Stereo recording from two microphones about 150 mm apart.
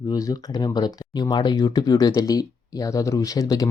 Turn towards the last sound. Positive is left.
turn(degrees=25)  # may be behind; listen again after turning